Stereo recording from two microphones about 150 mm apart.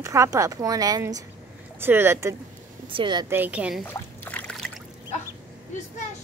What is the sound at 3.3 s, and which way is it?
Speech, 10° right (ahead or behind).